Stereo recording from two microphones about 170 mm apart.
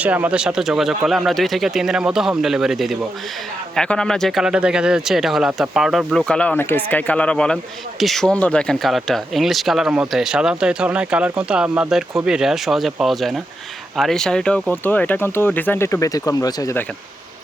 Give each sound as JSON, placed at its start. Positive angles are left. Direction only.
{"t": 0.0, "sound": "speech", "side_deg": -10}